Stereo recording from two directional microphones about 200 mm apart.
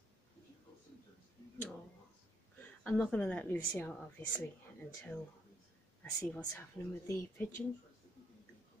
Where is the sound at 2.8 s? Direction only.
5° left (ahead or behind).